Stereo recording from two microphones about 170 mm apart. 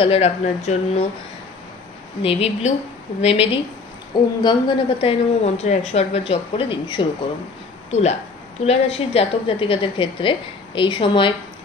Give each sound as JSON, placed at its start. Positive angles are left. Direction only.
{"t": 0.0, "sound": "a woman's voice", "side_deg": 35}
{"t": 2.2, "sound": "a woman's voice", "side_deg": 35}
{"t": 7.9, "sound": "a woman's voice", "side_deg": 40}